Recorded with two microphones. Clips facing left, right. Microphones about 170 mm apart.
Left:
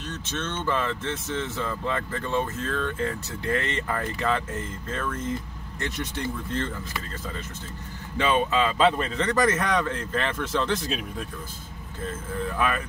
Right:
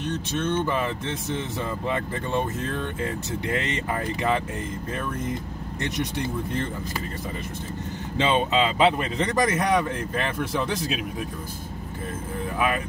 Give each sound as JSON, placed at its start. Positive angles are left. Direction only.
{"t": 0.0, "sound": "speech", "side_deg": -15}
{"t": 5.8, "sound": "speech", "side_deg": -20}
{"t": 8.2, "sound": "speech", "side_deg": -20}
{"t": 12.5, "sound": "speech", "side_deg": -15}